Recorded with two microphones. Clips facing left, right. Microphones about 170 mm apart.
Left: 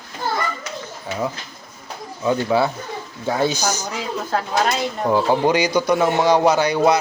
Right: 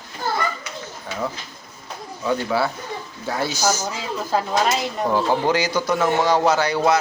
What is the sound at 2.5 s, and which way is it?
A man's voice, 20° left (ahead or behind).